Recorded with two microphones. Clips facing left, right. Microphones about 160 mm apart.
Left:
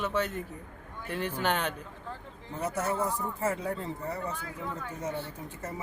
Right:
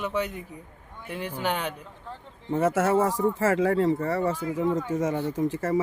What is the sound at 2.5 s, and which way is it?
Speech, 90° right.